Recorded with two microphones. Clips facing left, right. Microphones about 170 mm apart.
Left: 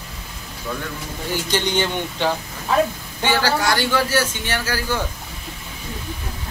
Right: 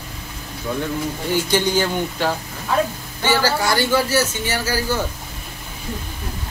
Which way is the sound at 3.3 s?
10° right (ahead or behind).